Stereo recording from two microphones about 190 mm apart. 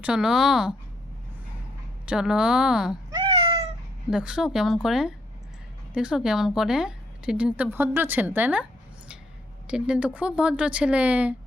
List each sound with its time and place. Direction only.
0.0 s speech: 5° right (ahead or behind)
2.0 s speech: 5° right (ahead or behind)
3.1 s cat: 25° right (ahead or behind)
4.1 s speech: 5° right (ahead or behind)
9.6 s speech: 5° right (ahead or behind)